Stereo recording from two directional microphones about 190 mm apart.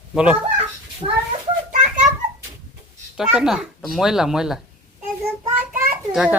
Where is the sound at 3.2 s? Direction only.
Centre (ahead or behind).